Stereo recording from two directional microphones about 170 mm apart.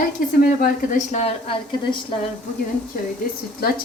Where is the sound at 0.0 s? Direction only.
55° left (ahead or behind); by 2.0 s 35° left (ahead or behind).